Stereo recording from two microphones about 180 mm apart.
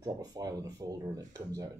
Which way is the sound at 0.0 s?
20° right (ahead or behind).